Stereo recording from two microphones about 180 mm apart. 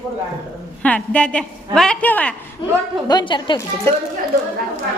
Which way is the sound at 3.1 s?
25° left (ahead or behind).